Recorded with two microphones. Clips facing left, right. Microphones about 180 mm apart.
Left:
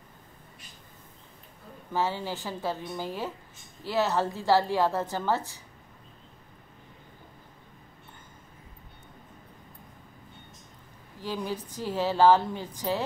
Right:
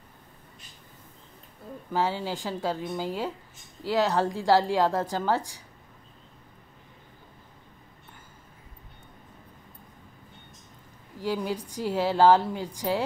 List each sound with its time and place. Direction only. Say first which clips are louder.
1.9 s a woman's voice: right 2 dB; 15° right (ahead or behind)
11.1 s a woman's voice: right 4 dB; 10° right (ahead or behind)